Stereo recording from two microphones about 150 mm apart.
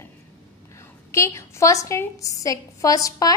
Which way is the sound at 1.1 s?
20° left (ahead or behind).